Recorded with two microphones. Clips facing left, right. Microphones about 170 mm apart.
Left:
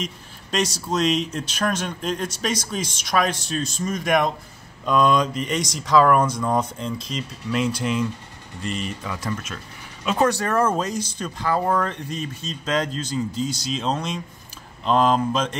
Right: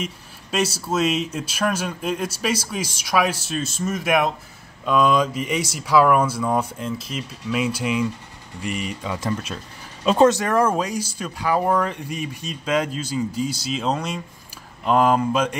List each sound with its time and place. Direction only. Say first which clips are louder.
0.0 s a sound: right 1 dB; 5° right (ahead or behind)
0.7 s speech: even; 5° right (ahead or behind)
9.0 s speech: right 3 dB; 25° right (ahead or behind)